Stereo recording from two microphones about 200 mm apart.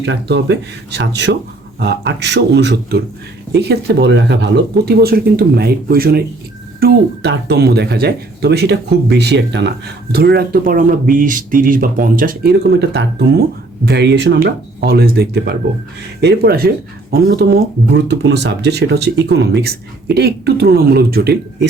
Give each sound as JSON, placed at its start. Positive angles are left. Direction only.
{"t": 0.0, "sound": "speech", "side_deg": -60}